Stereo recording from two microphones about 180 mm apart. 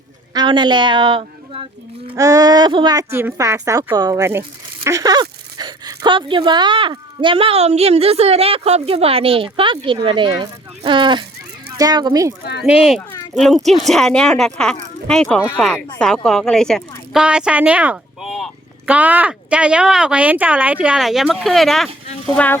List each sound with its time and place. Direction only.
0.3 s speech: 25° right (ahead or behind)
2.1 s speech: 20° right (ahead or behind)
12.6 s speech: 5° right (ahead or behind)